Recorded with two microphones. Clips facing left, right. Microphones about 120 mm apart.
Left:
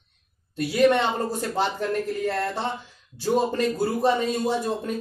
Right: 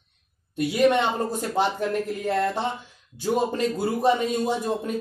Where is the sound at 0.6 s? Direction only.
15° right (ahead or behind).